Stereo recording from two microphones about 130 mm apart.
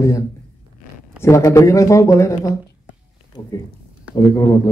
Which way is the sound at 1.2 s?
25° left (ahead or behind).